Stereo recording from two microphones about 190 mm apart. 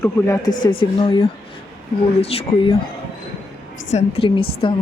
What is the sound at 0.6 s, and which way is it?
Speech, 25° left (ahead or behind).